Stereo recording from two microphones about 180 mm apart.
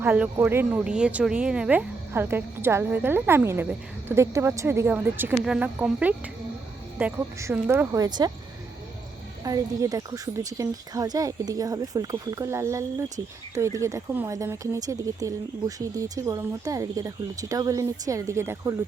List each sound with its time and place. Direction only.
0.0 s speech: 10° right (ahead or behind)
9.4 s speech: 20° right (ahead or behind)